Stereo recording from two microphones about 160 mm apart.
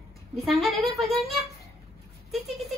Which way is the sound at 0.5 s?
Centre (ahead or behind).